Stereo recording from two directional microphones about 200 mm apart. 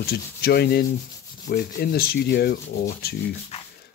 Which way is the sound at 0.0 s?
50° left (ahead or behind).